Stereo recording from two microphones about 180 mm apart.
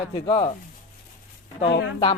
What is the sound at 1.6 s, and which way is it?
Speech, 70° left (ahead or behind).